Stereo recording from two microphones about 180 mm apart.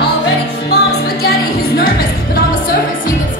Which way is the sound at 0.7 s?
65° left (ahead or behind).